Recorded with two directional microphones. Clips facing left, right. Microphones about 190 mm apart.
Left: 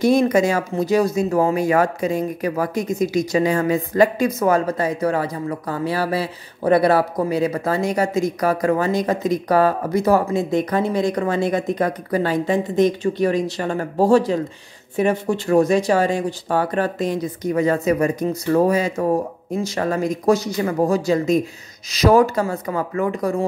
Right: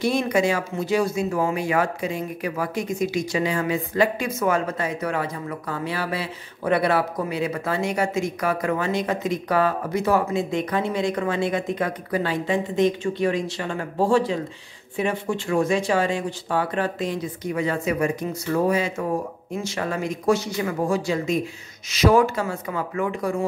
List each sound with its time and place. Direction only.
0.0 s speech: 40° left (ahead or behind)